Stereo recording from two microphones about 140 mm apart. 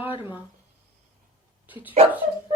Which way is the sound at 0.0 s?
40° left (ahead or behind).